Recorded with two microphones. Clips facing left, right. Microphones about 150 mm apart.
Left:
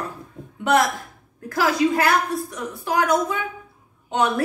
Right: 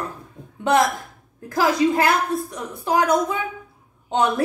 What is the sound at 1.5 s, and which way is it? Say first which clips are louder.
A woman's voice: right 1 dB; 20° right (ahead or behind).